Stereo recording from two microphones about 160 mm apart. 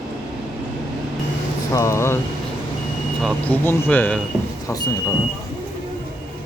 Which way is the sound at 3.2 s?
10° left (ahead or behind).